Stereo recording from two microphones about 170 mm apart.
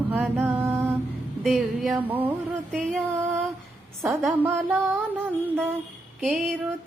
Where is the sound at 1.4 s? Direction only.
Centre (ahead or behind).